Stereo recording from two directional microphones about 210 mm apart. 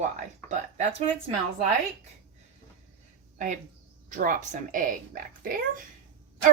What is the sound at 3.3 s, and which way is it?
A woman's voice, 35° right (ahead or behind).